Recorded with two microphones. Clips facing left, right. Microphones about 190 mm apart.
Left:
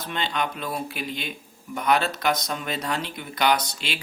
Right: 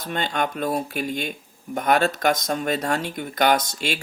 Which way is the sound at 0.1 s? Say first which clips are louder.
Right 3 dB; 45° right (ahead or behind).